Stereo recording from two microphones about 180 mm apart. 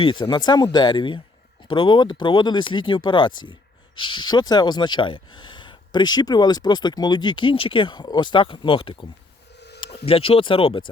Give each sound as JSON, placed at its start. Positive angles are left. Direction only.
{"t": 0.0, "sound": "speech", "side_deg": 25}
{"t": 9.6, "sound": "a sound", "side_deg": 65}
{"t": 10.1, "sound": "speech", "side_deg": 30}